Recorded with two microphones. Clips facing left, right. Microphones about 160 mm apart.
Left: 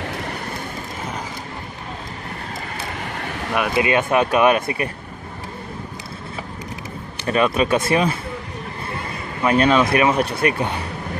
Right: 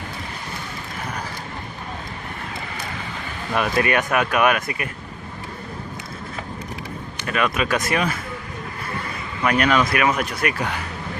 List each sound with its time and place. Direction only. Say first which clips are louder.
3.0 s vehicle: left 4 dB; 65° left (ahead or behind)
3.5 s speech: left 1 dB; 15° left (ahead or behind)
7.2 s speech: left 4 dB; 30° left (ahead or behind)
9.4 s speech: left 3 dB; 30° left (ahead or behind)